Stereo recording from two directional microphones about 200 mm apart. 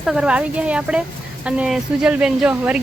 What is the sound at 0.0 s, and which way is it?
Speech, 5° right (ahead or behind).